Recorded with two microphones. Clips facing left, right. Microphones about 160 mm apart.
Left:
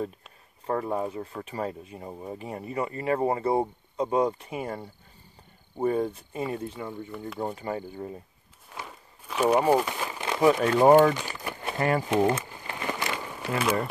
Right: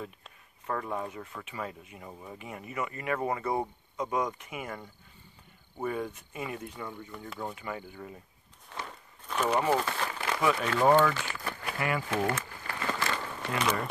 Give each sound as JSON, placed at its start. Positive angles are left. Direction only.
{"t": 0.7, "sound": "speech", "side_deg": 30}
{"t": 8.6, "sound": "crumpling", "side_deg": 10}
{"t": 10.6, "sound": "speech", "side_deg": 15}
{"t": 11.1, "sound": "a sound", "side_deg": 20}